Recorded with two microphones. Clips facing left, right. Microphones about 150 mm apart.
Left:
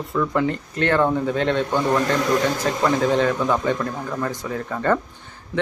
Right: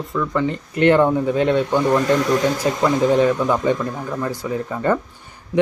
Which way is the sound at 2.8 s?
10° right (ahead or behind).